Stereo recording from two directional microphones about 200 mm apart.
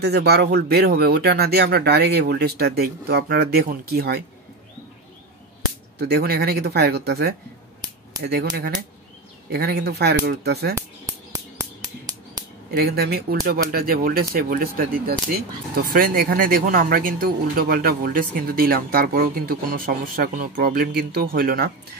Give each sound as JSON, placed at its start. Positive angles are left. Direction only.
{"t": 0.0, "sound": "speech", "side_deg": -55}
{"t": 5.9, "sound": "speech", "side_deg": -55}
{"t": 10.7, "sound": "a sound", "side_deg": -15}
{"t": 12.7, "sound": "speech", "side_deg": -50}